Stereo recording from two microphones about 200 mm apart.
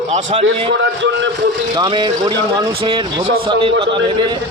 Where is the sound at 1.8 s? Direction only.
20° right (ahead or behind).